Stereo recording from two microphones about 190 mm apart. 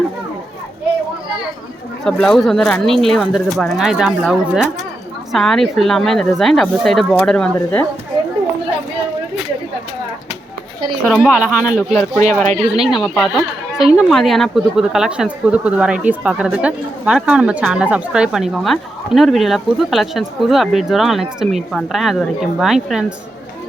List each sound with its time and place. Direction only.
2.0 s speech: 5° left (ahead or behind)
11.0 s speech: centre (ahead or behind)
12.2 s speech: 35° right (ahead or behind)
12.8 s speech: centre (ahead or behind)